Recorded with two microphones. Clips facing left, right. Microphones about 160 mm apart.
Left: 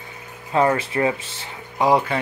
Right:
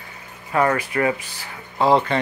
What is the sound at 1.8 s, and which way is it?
Speech, 10° left (ahead or behind).